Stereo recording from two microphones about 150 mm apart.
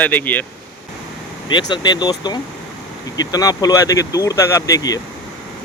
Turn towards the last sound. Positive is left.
turn(degrees=25)  # may be behind; listen again after turning